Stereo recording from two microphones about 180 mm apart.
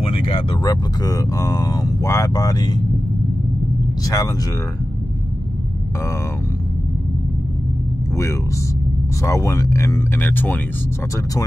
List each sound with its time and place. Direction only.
0.0 s speech: 30° left (ahead or behind)
4.0 s speech: 20° left (ahead or behind)
8.1 s speech: 15° left (ahead or behind)